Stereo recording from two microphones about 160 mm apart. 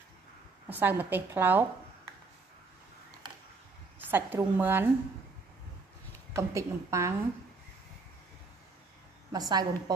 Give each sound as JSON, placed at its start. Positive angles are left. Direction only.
{"t": 0.7, "sound": "a woman's voice", "side_deg": -10}
{"t": 4.1, "sound": "a woman's voice", "side_deg": -10}
{"t": 6.3, "sound": "a woman's voice", "side_deg": -20}
{"t": 9.3, "sound": "a woman's voice", "side_deg": -25}